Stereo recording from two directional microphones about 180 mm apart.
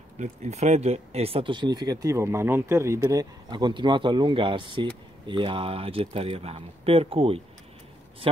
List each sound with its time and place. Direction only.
0.2 s speech: 40° right (ahead or behind)